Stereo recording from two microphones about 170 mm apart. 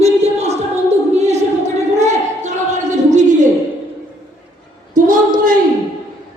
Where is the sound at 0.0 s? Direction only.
40° right (ahead or behind).